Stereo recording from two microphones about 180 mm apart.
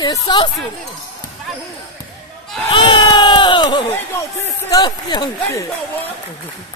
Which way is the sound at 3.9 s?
15° left (ahead or behind).